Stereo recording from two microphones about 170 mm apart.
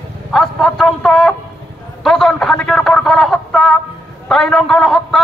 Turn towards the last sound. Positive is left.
turn(degrees=0)  # may be behind; listen again after turning